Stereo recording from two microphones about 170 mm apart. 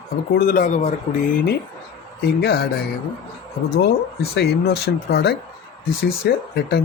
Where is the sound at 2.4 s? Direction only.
65° left (ahead or behind).